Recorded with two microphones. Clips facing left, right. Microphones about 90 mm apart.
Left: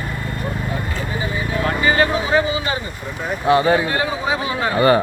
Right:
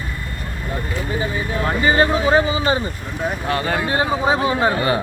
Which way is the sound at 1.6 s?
30° right (ahead or behind).